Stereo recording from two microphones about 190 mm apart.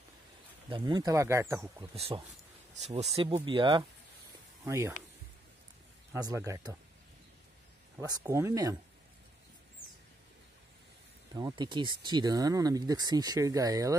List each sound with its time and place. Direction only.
0.7 s speech: 25° right (ahead or behind)
2.0 s speech: 30° right (ahead or behind)
4.6 s speech: 15° right (ahead or behind)
6.1 s speech: 15° right (ahead or behind)
8.0 s speech: 15° right (ahead or behind)
11.3 s speech: 20° right (ahead or behind)